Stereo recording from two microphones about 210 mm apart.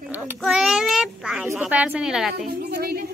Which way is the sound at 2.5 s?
50° right (ahead or behind).